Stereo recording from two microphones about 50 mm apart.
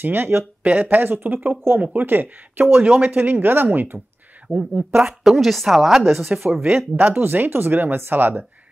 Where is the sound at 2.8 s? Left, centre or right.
Right.